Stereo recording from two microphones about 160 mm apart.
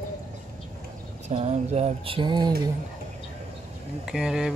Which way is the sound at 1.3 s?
45° right (ahead or behind).